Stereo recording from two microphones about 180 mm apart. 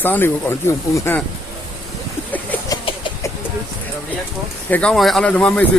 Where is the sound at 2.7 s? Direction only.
20° left (ahead or behind).